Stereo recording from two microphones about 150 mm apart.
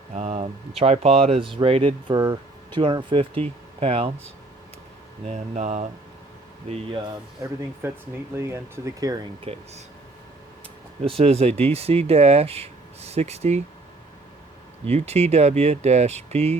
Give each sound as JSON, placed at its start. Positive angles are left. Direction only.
{"t": 0.1, "sound": "a sound", "side_deg": -45}
{"t": 0.8, "sound": "speech", "side_deg": -40}
{"t": 2.1, "sound": "speech", "side_deg": -25}
{"t": 5.2, "sound": "speech", "side_deg": -50}
{"t": 7.8, "sound": "speech", "side_deg": -15}
{"t": 9.4, "sound": "speech", "side_deg": -45}
{"t": 11.0, "sound": "speech", "side_deg": -40}
{"t": 14.8, "sound": "speech", "side_deg": -45}